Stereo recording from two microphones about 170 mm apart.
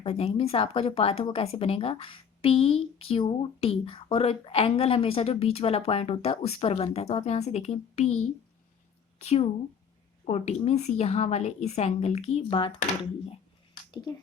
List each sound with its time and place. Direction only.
0.0 s speech: 35° left (ahead or behind)
9.2 s speech: 40° left (ahead or behind)